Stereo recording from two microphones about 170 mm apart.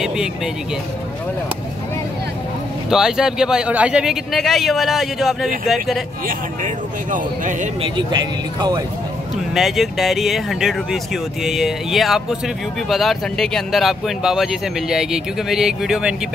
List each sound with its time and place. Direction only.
2.9 s speech: 5° right (ahead or behind)
6.2 s a man's voice: 50° right (ahead or behind)
7.8 s speech: 25° right (ahead or behind)
9.5 s speech: centre (ahead or behind)